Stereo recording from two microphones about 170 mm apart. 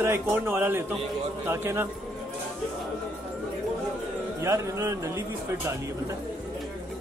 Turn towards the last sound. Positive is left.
turn(degrees=-20)  # may be behind; listen again after turning